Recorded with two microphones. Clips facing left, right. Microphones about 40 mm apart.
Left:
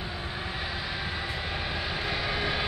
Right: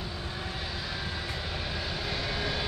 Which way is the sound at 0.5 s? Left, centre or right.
Centre.